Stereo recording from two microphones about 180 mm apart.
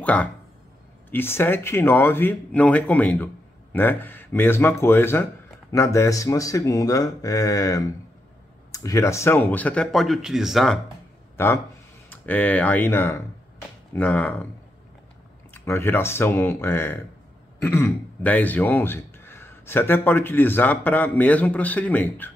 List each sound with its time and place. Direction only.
0.0 s speech: 5° left (ahead or behind)
11.3 s speech: 15° left (ahead or behind)
15.5 s speech: 15° left (ahead or behind)